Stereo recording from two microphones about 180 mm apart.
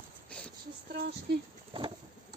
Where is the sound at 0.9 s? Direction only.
70° right (ahead or behind).